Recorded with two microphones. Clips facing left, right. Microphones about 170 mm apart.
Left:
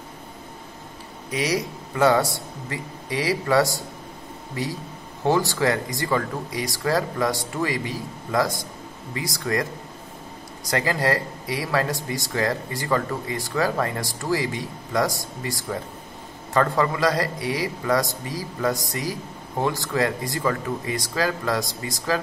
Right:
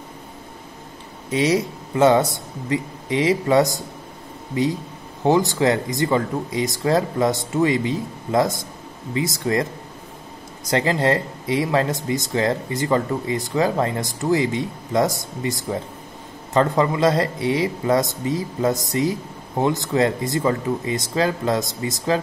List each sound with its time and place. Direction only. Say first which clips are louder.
1.3 s speech: right 5 dB; 25° right (ahead or behind)
10.7 s speech: right 4 dB; 25° right (ahead or behind)